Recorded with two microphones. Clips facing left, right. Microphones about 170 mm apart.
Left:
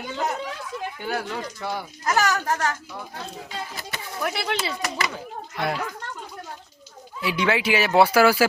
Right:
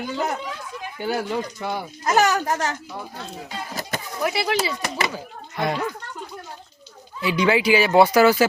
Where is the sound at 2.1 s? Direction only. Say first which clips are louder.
Right 3 dB; 20° right (ahead or behind).